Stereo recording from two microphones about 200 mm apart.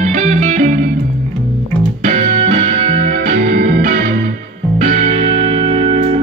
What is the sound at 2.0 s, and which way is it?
Music, 40° right (ahead or behind).